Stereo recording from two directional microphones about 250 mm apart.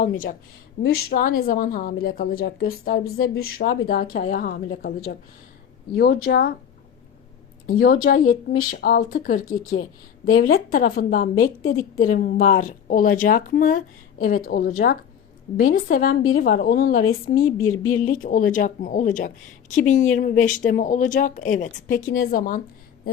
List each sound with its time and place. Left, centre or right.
0.0 s speech: left
0.8 s speech: left
7.7 s speech: left
11.6 s a woman's voice: left
12.1 s speech: left
17.4 s speech: centre
18.0 s speech: left
22.2 s speech: left